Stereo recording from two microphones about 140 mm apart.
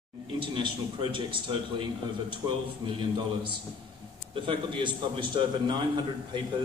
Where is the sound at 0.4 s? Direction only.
35° right (ahead or behind).